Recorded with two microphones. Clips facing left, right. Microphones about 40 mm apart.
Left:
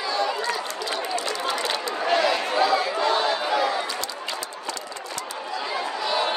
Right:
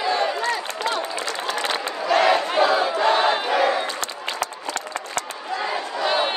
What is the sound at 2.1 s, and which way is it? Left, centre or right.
Chatter, right.